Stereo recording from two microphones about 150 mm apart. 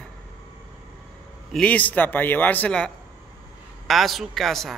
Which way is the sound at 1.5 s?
10° left (ahead or behind).